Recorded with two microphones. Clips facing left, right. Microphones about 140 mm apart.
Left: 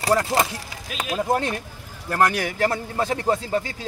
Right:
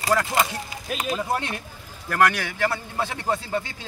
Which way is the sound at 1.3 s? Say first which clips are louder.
Left 4 dB; 40° left (ahead or behind).